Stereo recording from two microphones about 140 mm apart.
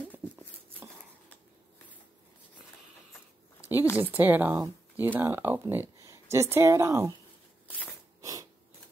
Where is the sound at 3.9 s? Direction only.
10° right (ahead or behind).